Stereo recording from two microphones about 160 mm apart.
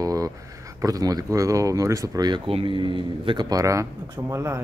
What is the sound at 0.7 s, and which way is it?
Speech, 20° right (ahead or behind).